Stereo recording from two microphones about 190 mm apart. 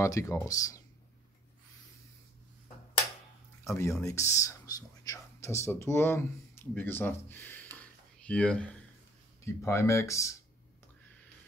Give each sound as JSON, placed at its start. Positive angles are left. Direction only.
{"t": 0.0, "sound": "speech", "side_deg": 15}
{"t": 3.6, "sound": "speech", "side_deg": 15}
{"t": 7.7, "sound": "a sound", "side_deg": 5}
{"t": 9.4, "sound": "speech", "side_deg": 15}